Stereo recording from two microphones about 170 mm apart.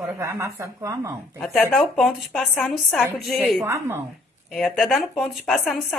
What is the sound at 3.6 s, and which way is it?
Speech, 15° right (ahead or behind).